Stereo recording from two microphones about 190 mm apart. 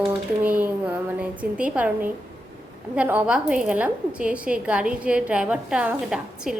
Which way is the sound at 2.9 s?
5° right (ahead or behind).